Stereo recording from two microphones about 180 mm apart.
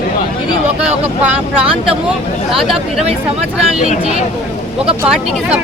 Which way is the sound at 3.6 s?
35° right (ahead or behind).